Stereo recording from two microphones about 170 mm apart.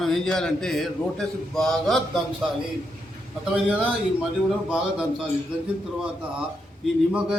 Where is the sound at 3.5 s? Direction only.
10° right (ahead or behind).